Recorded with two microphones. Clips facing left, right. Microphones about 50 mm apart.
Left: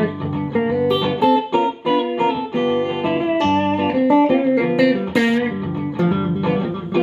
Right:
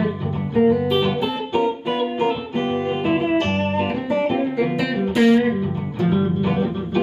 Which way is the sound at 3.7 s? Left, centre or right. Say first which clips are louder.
Left 6 dB; left.